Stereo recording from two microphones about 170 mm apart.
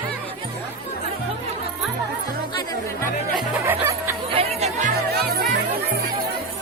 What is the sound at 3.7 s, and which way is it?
Music, 15° right (ahead or behind).